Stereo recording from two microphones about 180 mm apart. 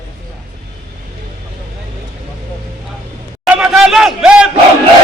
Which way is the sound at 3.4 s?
5° right (ahead or behind).